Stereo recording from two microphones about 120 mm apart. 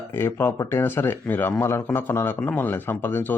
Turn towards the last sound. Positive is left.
turn(degrees=15)  # may be behind; listen again after turning